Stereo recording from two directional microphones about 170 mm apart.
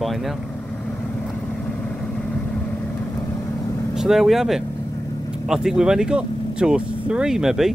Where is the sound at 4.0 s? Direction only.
Centre (ahead or behind).